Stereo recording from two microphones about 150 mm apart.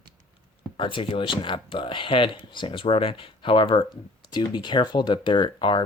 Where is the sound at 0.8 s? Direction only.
35° left (ahead or behind).